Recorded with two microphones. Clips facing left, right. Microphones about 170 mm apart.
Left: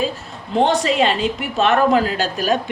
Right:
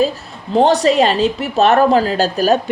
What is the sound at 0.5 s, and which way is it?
Speech, 35° right (ahead or behind).